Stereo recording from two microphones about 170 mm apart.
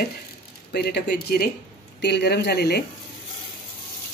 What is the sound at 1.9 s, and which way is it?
Speech, 80° left.